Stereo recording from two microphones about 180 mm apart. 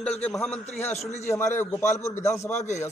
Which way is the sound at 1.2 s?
15° left (ahead or behind).